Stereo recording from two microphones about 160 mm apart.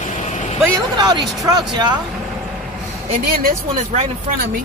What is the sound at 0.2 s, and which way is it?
Vehicle, 45° left (ahead or behind).